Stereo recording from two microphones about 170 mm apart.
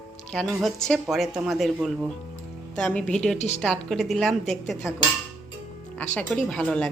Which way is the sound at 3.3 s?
40° left (ahead or behind).